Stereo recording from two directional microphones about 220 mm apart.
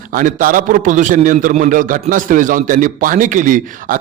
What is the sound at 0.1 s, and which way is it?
A man's voice, 40° right (ahead or behind).